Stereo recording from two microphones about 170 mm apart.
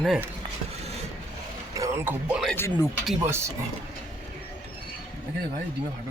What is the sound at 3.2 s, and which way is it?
Speech, 15° right (ahead or behind).